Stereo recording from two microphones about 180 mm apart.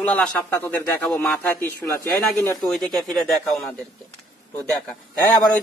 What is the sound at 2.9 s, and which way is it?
Speech, centre (ahead or behind).